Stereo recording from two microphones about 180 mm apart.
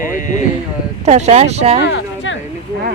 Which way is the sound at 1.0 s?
35° right (ahead or behind).